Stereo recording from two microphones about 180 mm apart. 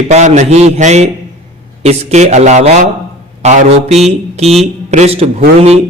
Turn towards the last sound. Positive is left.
turn(degrees=-35)  # may be behind; listen again after turning